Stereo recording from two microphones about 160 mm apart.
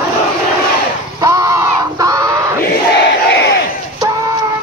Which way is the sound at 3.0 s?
90° left.